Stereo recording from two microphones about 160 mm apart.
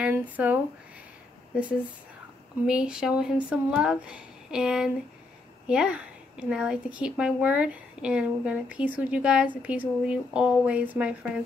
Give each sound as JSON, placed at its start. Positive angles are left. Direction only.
{"t": 0.4, "sound": "a woman's voice", "side_deg": -10}